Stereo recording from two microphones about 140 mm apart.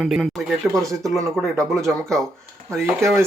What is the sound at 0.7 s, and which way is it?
Speech, 25° right (ahead or behind).